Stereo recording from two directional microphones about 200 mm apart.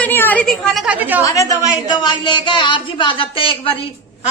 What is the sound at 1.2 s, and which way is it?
A woman's voice, 15° left (ahead or behind).